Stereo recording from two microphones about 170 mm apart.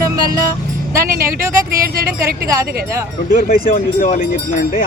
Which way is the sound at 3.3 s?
60° left (ahead or behind).